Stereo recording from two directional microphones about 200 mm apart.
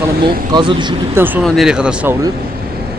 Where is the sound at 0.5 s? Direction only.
20° right (ahead or behind).